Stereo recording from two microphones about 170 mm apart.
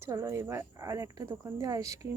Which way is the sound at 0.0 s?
15° right (ahead or behind).